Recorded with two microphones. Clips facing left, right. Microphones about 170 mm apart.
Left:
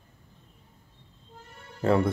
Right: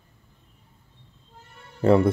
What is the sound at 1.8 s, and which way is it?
Speech, 25° right (ahead or behind).